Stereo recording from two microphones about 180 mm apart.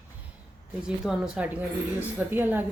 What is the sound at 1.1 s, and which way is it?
A woman's voice, 5° right (ahead or behind).